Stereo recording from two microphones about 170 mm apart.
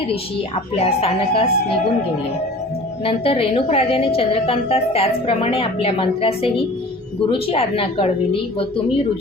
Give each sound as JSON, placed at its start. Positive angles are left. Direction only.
{"t": 0.8, "sound": "a woman's voice", "side_deg": 35}
{"t": 3.0, "sound": "a woman's voice", "side_deg": 35}